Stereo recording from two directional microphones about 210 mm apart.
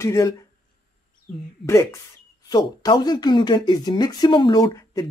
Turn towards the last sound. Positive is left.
turn(degrees=20)  # may be behind; listen again after turning